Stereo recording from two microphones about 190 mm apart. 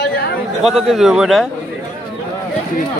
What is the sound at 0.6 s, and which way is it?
Speech, centre (ahead or behind).